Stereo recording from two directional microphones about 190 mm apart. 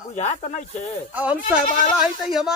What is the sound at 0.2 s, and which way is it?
Speech, 40° left (ahead or behind).